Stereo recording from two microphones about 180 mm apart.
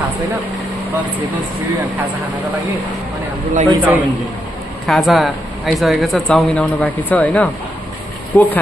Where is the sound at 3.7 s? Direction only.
10° right (ahead or behind).